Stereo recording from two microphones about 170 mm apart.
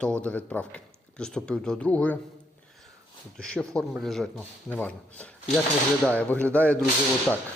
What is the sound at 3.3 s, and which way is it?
Speech, 5° left (ahead or behind).